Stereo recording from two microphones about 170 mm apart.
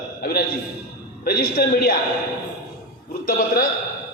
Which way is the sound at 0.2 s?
60° left (ahead or behind).